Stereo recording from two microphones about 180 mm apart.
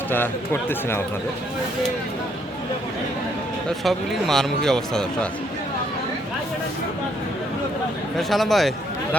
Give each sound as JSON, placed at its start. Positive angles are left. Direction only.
{"t": 0.1, "sound": "speech", "side_deg": 10}
{"t": 3.7, "sound": "speech", "side_deg": 0}
{"t": 8.3, "sound": "speech", "side_deg": 0}